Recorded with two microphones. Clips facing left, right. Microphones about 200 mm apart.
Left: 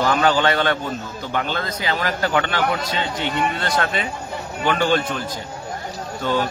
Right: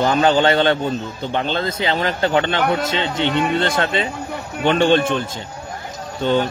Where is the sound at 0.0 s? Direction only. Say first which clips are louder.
Right 3 dB; 25° right (ahead or behind).